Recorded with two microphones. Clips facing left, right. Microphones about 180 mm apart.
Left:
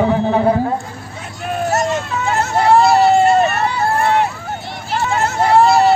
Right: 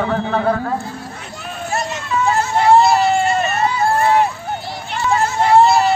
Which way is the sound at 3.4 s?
65° left (ahead or behind).